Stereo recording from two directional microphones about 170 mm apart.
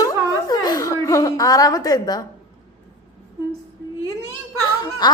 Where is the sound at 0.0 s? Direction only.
20° left (ahead or behind).